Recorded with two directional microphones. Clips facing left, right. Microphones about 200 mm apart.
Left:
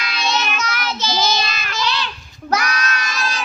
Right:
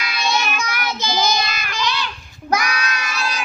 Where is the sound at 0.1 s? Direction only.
10° right (ahead or behind).